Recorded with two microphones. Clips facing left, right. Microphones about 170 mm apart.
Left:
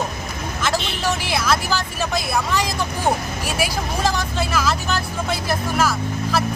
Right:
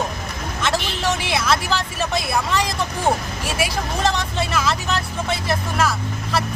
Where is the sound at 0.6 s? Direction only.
Centre (ahead or behind).